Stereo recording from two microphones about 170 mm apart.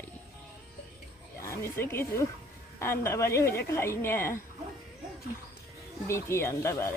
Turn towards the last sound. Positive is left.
turn(degrees=15)  # may be behind; listen again after turning